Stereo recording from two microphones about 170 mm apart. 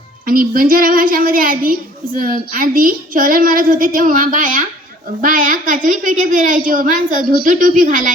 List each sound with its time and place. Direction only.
0.3 s a child's voice: 55° right (ahead or behind)